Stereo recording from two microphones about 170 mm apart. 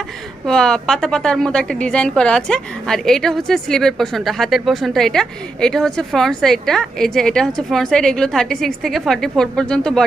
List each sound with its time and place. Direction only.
0.4 s a woman's voice: 5° left (ahead or behind)